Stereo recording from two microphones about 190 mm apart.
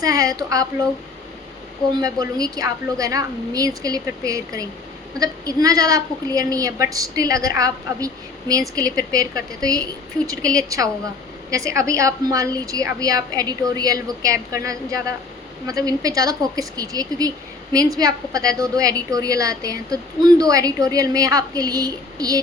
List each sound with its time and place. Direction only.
0.0 s a woman's voice: 20° right (ahead or behind)
2.0 s a woman's voice: 20° right (ahead or behind)